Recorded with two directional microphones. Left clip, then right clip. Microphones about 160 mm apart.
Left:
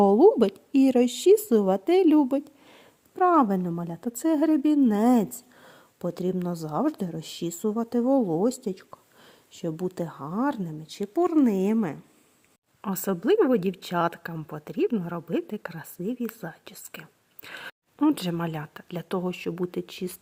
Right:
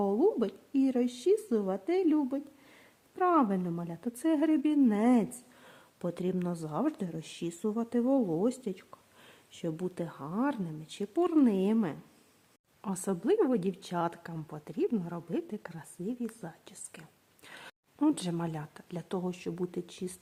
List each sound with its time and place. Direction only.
0.0 s speech: 50° left (ahead or behind)
3.2 s speech: 30° left (ahead or behind)